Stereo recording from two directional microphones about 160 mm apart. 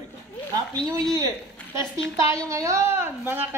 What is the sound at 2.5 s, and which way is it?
A woman's voice, 20° right (ahead or behind).